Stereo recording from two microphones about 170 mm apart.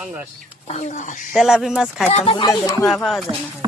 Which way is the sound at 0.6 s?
40° left (ahead or behind).